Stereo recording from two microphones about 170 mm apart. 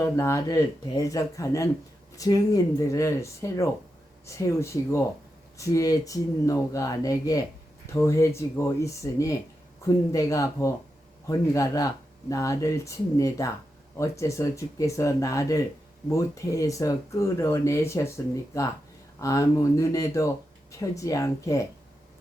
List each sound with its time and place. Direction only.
0.0 s speech: 20° left (ahead or behind)
19.2 s speech: 20° left (ahead or behind)